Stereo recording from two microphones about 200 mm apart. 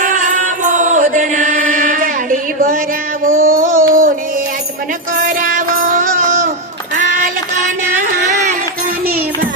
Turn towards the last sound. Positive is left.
turn(degrees=-40)  # may be behind; listen again after turning